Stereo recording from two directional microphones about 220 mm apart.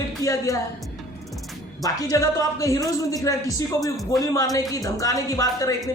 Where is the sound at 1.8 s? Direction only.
15° left (ahead or behind).